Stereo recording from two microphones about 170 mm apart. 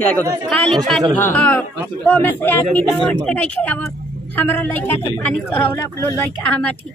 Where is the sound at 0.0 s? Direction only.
10° left (ahead or behind).